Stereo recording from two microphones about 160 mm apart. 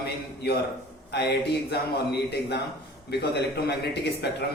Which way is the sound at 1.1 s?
90° left.